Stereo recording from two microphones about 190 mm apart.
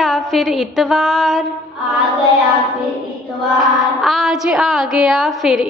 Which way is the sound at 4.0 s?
Centre (ahead or behind).